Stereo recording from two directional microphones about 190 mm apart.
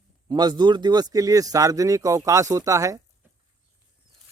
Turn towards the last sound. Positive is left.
turn(degrees=-15)  # may be behind; listen again after turning